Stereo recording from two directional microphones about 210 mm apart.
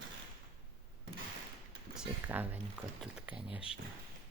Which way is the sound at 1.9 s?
5° right (ahead or behind).